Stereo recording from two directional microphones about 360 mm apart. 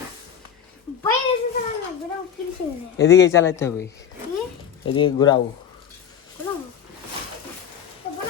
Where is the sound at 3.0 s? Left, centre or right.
Left.